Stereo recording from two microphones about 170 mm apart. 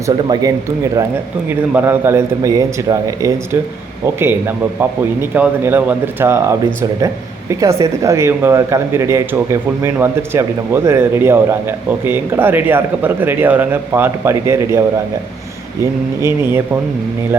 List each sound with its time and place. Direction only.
0.0 s speech: 20° right (ahead or behind)
1.5 s speech: 10° right (ahead or behind)
7.6 s speech: 20° right (ahead or behind)
16.2 s speech: 15° right (ahead or behind)